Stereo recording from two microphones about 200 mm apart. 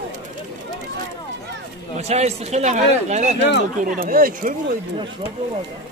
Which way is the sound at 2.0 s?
35° right (ahead or behind).